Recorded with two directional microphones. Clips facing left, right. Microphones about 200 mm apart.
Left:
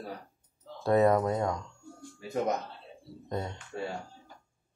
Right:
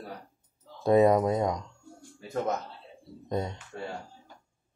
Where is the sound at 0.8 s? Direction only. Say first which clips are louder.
Right 3 dB; 15° right (ahead or behind).